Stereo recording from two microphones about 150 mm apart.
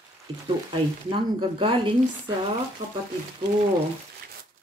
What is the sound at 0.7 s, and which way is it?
Speech, 35° right (ahead or behind).